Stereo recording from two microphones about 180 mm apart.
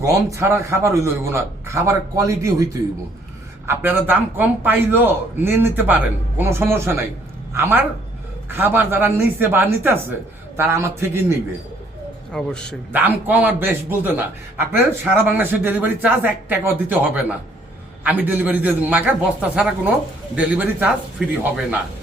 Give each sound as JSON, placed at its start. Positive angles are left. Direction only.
{"t": 0.0, "sound": "a man's voice", "side_deg": -15}
{"t": 3.7, "sound": "a man's voice", "side_deg": -10}
{"t": 12.3, "sound": "a man's voice", "side_deg": 5}
{"t": 12.9, "sound": "a man's voice", "side_deg": -10}